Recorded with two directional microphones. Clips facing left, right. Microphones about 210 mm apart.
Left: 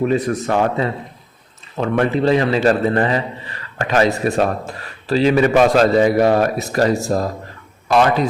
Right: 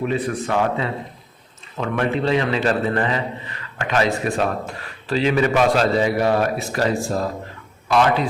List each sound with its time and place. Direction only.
0.1 s a man's voice: 40° left (ahead or behind)